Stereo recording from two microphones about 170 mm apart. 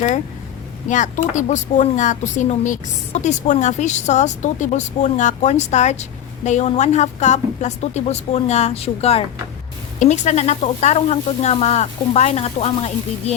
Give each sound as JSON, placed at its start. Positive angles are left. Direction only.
{"t": 0.9, "sound": "speech", "side_deg": 45}